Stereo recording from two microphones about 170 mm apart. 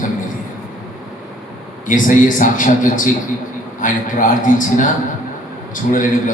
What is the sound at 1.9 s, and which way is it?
Speech, 50° left (ahead or behind).